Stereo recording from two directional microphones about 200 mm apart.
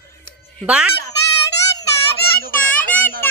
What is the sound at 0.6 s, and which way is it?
Speech, 5° right (ahead or behind).